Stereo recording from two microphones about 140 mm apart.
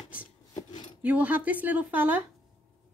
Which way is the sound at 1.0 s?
10° right (ahead or behind).